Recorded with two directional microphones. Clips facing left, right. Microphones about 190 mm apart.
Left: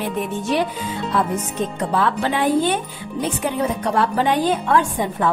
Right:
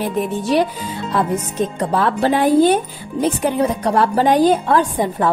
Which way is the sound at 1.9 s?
40° right (ahead or behind).